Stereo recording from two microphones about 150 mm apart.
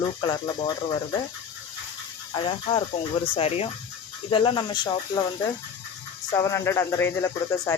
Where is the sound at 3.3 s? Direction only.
40° left (ahead or behind).